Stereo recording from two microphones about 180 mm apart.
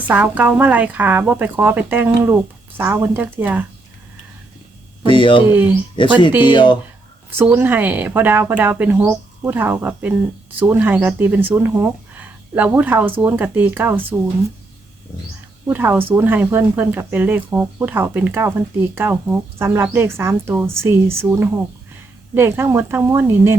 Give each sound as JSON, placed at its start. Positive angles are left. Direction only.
{"t": 0.1, "sound": "speech", "side_deg": -10}
{"t": 5.0, "sound": "speech", "side_deg": 30}
{"t": 5.5, "sound": "speech", "side_deg": -10}
{"t": 6.4, "sound": "speech", "side_deg": 25}
{"t": 7.3, "sound": "speech", "side_deg": -10}
{"t": 15.6, "sound": "speech", "side_deg": -10}